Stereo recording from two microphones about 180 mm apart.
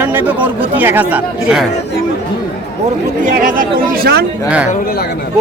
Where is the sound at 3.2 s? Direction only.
50° right (ahead or behind).